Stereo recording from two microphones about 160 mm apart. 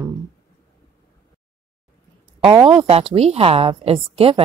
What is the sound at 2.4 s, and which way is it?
A woman's voice, 30° right (ahead or behind).